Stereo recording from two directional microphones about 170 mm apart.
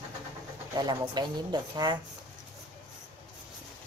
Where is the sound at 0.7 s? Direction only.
25° right (ahead or behind).